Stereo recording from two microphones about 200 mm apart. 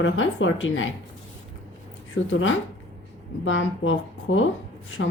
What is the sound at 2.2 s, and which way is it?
A woman's voice, 75° left (ahead or behind).